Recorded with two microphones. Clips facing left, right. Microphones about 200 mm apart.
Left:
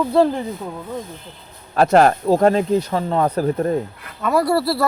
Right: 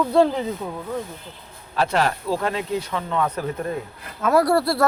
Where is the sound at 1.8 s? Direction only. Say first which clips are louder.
Left 8 dB; 45° left (ahead or behind).